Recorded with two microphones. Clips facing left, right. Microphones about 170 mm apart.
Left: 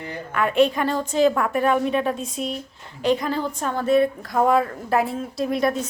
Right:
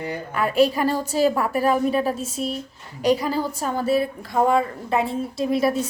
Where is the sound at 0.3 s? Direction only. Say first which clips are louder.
Even; 5° right (ahead or behind).